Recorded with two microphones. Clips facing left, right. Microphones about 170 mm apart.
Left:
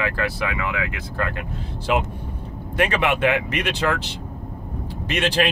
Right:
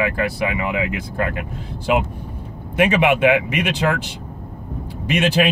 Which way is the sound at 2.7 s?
10° right (ahead or behind).